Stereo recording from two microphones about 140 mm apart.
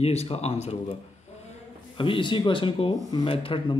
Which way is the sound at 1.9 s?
40° left (ahead or behind).